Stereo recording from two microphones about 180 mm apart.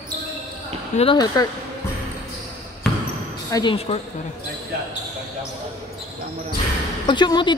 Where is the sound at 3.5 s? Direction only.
20° left (ahead or behind).